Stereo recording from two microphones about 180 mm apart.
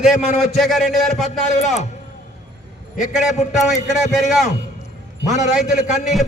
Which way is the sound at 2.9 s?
45° left (ahead or behind).